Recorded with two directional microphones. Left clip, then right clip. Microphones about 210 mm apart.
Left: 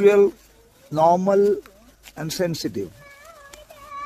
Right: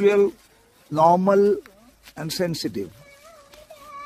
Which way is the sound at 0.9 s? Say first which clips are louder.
Even; 15° right (ahead or behind).